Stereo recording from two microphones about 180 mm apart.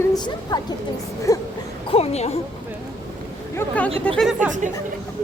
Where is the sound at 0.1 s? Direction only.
20° left (ahead or behind).